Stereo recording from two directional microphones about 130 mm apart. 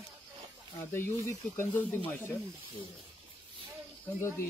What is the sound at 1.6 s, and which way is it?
Speech, 15° left (ahead or behind).